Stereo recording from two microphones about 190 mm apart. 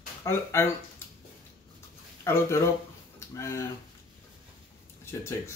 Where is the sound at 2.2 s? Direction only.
15° left (ahead or behind).